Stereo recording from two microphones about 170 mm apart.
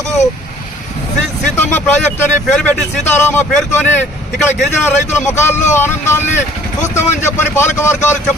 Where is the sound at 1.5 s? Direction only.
15° left (ahead or behind).